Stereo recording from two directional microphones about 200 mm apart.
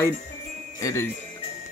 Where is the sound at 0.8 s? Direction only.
15° left (ahead or behind).